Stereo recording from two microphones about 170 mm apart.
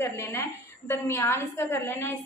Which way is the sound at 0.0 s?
15° left (ahead or behind).